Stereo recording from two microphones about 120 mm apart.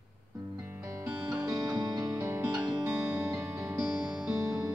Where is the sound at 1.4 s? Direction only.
35° right (ahead or behind).